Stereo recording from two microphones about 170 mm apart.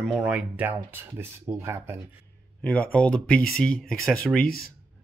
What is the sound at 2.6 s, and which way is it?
Speech, 5° left (ahead or behind).